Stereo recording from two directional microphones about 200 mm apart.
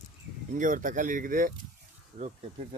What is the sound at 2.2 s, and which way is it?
Speech, 30° right (ahead or behind).